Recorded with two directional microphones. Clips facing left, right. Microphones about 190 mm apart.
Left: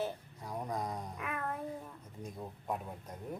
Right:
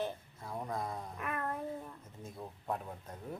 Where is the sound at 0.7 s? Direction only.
15° left (ahead or behind).